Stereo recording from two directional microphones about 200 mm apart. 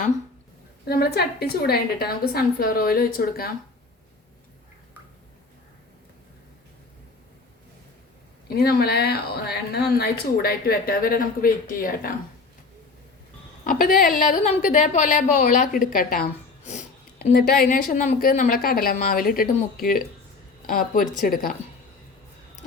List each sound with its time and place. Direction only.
0.9 s speech: 50° left (ahead or behind)
8.4 s speech: 50° left (ahead or behind)
13.7 s a woman's voice: 45° left (ahead or behind)